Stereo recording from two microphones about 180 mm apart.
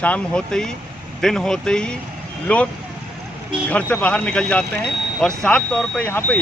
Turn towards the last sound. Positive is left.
turn(degrees=10)  # may be behind; listen again after turning